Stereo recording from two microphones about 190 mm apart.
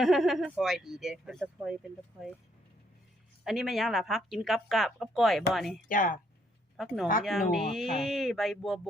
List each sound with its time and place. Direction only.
0.0 s speech: centre (ahead or behind)
3.4 s speech: centre (ahead or behind)
5.9 s speech: 45° left (ahead or behind)
6.7 s speech: centre (ahead or behind)